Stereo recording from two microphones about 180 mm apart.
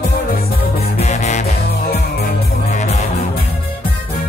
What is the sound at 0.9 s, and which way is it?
Music, 40° left (ahead or behind).